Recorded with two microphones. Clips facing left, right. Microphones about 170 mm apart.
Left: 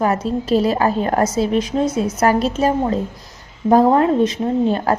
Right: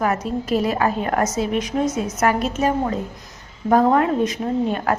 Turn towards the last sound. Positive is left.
turn(degrees=30)  # may be behind; listen again after turning